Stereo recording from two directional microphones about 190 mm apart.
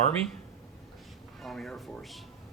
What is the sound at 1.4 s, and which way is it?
Speech, centre (ahead or behind).